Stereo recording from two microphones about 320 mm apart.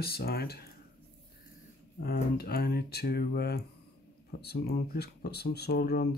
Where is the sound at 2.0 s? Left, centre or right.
Left.